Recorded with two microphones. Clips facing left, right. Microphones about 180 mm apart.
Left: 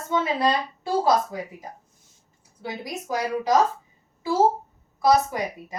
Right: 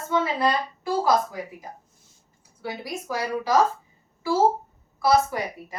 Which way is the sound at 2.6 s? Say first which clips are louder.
Even; 20° left (ahead or behind).